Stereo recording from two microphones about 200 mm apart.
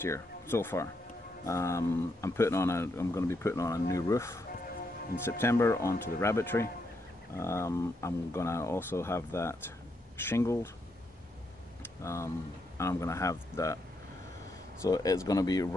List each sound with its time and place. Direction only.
0.0 s speech: 10° left (ahead or behind)
5.4 s speech: 15° left (ahead or behind)
12.0 s speech: 15° left (ahead or behind)
14.8 s speech: 20° left (ahead or behind)